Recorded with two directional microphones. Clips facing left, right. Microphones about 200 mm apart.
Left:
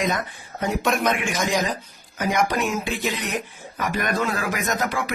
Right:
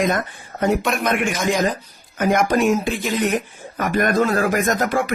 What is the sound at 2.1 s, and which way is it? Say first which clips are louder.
Speech: right 5 dB; 55° right (ahead or behind).